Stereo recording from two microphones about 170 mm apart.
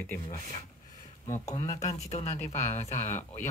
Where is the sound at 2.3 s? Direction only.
40° left (ahead or behind).